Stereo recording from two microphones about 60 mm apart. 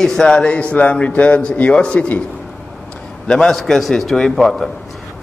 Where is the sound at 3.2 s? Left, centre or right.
Centre.